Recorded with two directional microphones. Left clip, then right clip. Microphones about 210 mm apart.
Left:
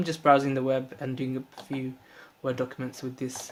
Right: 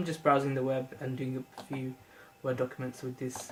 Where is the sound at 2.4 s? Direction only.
50° left (ahead or behind).